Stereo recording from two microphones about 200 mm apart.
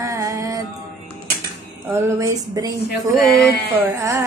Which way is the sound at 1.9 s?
15° right (ahead or behind).